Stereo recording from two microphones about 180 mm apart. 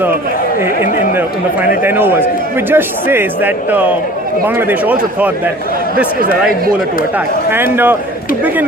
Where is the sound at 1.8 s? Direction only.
10° right (ahead or behind).